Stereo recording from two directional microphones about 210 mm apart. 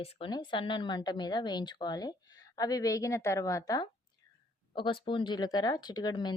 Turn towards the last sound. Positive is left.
turn(degrees=20)  # may be behind; listen again after turning